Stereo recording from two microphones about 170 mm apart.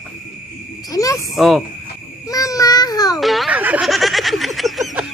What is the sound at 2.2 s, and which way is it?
Child singing, 20° left (ahead or behind).